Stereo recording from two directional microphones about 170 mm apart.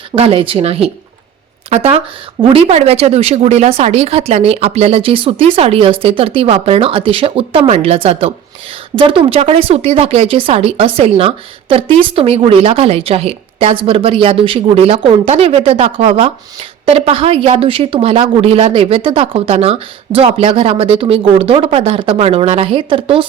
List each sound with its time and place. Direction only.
0.2 s speech: 35° right (ahead or behind)